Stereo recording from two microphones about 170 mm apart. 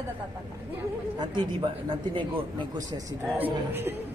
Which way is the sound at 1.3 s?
25° right (ahead or behind).